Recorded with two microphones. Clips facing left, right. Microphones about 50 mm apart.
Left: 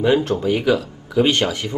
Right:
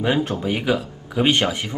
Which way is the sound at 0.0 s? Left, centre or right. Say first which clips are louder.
Left 4 dB; centre.